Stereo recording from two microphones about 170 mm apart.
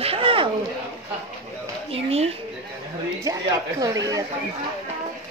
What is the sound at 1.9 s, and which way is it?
Speech, 35° right (ahead or behind).